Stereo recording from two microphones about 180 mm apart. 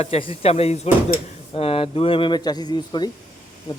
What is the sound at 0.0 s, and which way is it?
Speech, 35° left (ahead or behind).